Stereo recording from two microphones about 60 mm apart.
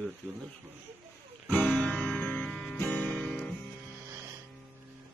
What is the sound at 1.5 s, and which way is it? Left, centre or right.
Music, left.